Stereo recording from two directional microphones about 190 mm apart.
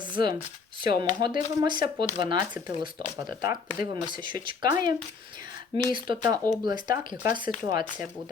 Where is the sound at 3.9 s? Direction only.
25° right (ahead or behind).